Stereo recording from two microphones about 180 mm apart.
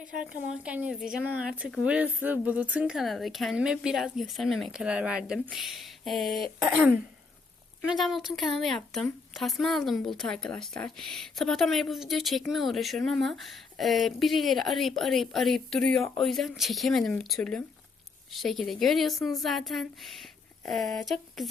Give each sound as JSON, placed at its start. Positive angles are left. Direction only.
{"t": 0.0, "sound": "speech", "side_deg": -5}
{"t": 7.9, "sound": "speech", "side_deg": 0}